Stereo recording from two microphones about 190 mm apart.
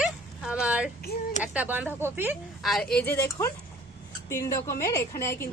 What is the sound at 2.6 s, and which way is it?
A woman's voice, centre (ahead or behind).